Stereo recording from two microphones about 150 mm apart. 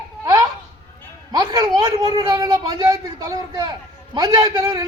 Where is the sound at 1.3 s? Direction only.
25° right (ahead or behind).